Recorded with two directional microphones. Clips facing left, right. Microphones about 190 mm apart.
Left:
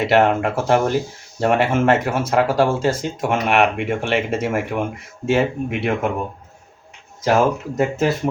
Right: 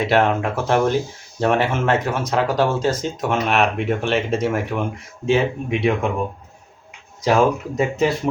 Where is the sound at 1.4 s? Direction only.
10° left (ahead or behind).